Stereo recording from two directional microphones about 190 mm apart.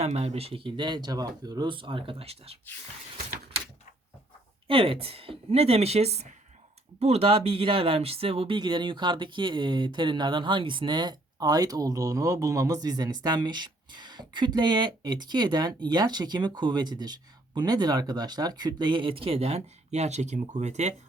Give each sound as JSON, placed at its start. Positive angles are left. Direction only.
{"t": 0.0, "sound": "speech", "side_deg": -35}
{"t": 4.7, "sound": "a woman's voice", "side_deg": -30}